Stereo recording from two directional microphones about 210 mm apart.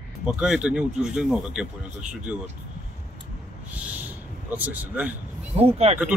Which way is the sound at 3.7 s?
5° right (ahead or behind).